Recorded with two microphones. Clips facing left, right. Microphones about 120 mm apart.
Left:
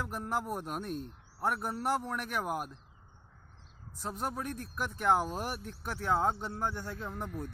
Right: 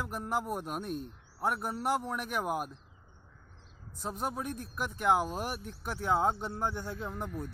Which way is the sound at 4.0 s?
10° right (ahead or behind).